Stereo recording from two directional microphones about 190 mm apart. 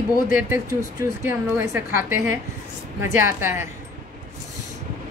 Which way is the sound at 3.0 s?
10° right (ahead or behind).